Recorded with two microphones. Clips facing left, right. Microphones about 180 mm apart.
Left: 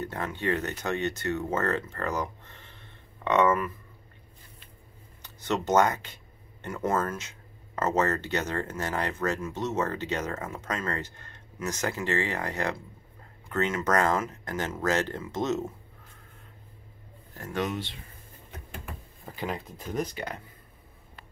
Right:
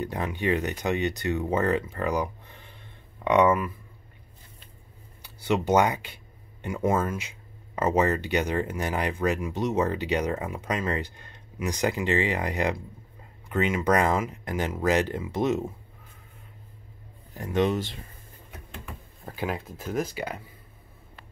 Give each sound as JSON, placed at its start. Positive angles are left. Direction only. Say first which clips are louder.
{"t": 0.0, "sound": "speech", "louder": "right 3 dB", "side_deg": -15}
{"t": 5.2, "sound": "speech", "louder": "right 4 dB", "side_deg": -10}
{"t": 17.3, "sound": "speech", "louder": "right 6 dB", "side_deg": -20}
{"t": 19.2, "sound": "speech", "louder": "right 3 dB", "side_deg": -5}